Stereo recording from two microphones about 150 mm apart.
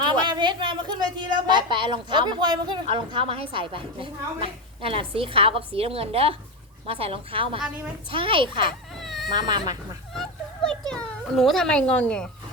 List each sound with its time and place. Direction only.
0.1 s a woman's voice: 30° right (ahead or behind)
9.0 s baby cry: centre (ahead or behind)
9.3 s speech: 30° right (ahead or behind)
10.7 s a child's voice: 5° left (ahead or behind)